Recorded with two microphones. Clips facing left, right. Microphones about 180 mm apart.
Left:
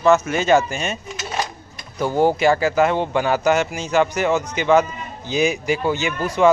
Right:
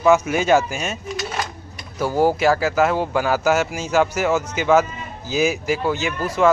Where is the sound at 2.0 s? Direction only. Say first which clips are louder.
Left 1 dB; 5° right (ahead or behind).